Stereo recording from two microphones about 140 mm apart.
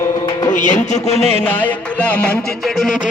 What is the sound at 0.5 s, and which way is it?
Music, 65° left (ahead or behind).